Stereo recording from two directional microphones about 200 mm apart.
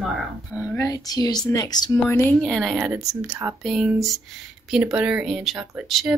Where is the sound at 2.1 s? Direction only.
5° left (ahead or behind).